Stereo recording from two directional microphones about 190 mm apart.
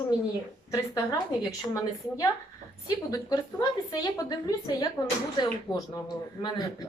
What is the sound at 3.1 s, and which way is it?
A woman's voice, 15° left (ahead or behind).